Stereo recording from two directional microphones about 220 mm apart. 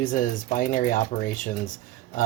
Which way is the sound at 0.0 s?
40° left (ahead or behind).